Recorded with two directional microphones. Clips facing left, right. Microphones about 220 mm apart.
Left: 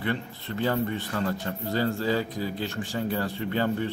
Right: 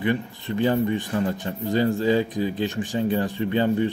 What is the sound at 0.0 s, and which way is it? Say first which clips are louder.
Speech: right 6 dB; 15° right (ahead or behind).